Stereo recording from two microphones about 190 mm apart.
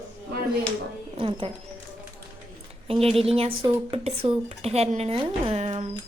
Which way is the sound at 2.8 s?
30° right (ahead or behind).